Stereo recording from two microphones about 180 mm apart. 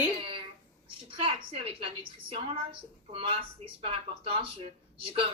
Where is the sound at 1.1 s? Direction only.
30° right (ahead or behind).